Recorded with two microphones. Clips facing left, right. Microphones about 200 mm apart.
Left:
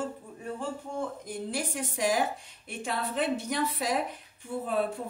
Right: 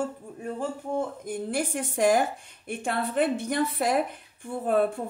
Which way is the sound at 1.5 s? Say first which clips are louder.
Right 5 dB; 50° right (ahead or behind).